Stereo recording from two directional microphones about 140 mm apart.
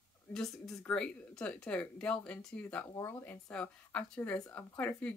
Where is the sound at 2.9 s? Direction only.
20° left (ahead or behind).